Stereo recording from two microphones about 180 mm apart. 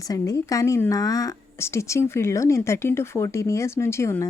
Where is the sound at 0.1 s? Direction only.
20° left (ahead or behind).